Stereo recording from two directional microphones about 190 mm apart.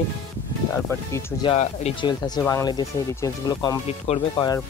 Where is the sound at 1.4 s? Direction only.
30° left (ahead or behind).